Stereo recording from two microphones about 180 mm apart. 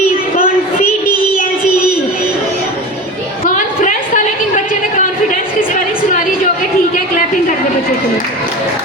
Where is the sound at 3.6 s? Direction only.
45° left (ahead or behind).